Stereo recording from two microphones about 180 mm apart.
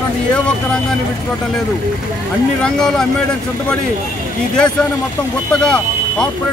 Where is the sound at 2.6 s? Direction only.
5° left (ahead or behind).